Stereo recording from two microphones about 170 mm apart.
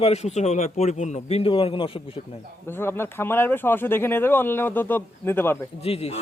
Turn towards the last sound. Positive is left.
turn(degrees=35)  # may be behind; listen again after turning